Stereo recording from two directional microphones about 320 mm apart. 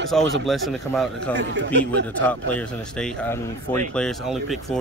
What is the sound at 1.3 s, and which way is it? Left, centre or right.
Speech, right.